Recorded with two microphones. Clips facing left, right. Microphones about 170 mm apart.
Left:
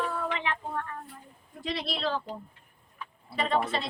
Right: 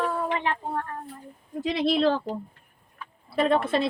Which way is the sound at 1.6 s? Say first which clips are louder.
Right 9 dB; 50° right (ahead or behind).